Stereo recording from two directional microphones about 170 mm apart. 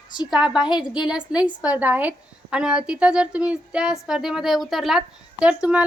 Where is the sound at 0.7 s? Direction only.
25° left (ahead or behind).